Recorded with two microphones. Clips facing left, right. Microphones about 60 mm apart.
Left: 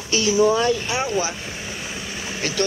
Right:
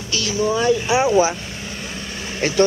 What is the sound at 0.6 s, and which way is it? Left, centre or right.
Speech, centre.